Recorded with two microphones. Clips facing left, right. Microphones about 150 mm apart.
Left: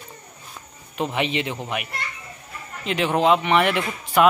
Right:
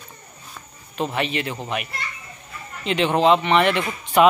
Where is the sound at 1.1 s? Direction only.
15° left (ahead or behind).